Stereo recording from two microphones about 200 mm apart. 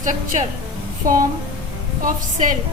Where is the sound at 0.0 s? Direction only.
40° right (ahead or behind).